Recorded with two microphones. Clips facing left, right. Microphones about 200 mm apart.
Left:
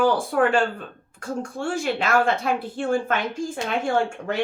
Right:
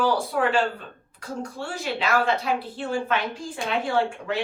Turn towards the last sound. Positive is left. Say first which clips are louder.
# left 1 dB
turn(degrees=45)  # may be behind; listen again after turning